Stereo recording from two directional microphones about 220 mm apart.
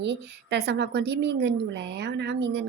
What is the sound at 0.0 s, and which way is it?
A woman's voice, 50° right (ahead or behind).